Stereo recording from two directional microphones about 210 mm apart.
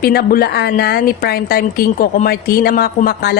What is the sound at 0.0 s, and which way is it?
Speech, 45° left (ahead or behind).